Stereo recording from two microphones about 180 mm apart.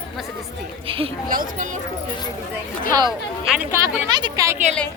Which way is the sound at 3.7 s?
25° right (ahead or behind).